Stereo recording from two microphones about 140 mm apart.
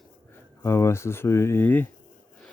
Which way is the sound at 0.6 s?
20° left (ahead or behind).